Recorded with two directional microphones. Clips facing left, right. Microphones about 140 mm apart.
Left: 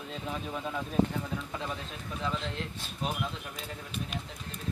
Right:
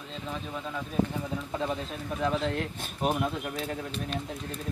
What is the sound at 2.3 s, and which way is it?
Speech, 50° right (ahead or behind).